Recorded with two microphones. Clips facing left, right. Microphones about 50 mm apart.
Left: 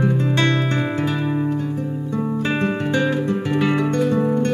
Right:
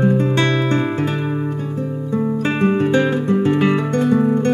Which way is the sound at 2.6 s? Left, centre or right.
Centre.